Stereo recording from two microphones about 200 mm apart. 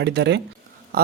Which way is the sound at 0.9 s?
50° right (ahead or behind).